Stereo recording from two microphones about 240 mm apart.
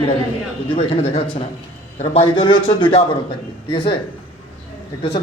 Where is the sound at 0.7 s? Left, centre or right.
Left.